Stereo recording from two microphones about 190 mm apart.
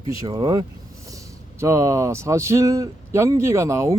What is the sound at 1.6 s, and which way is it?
Speech, 15° right (ahead or behind).